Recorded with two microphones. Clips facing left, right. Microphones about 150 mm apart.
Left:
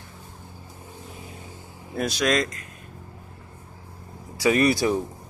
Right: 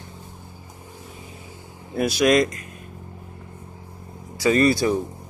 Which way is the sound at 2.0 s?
10° right (ahead or behind).